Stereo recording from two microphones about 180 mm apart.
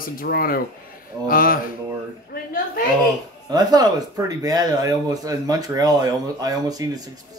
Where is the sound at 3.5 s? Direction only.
20° right (ahead or behind).